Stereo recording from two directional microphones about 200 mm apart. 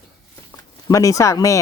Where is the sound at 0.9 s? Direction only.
15° left (ahead or behind).